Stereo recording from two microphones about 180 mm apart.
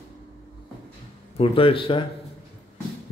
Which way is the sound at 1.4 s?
30° left (ahead or behind).